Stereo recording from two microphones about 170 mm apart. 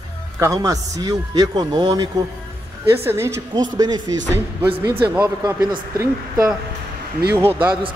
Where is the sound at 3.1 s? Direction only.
15° right (ahead or behind).